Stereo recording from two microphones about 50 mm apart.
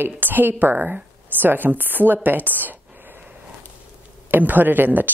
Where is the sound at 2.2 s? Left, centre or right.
Right.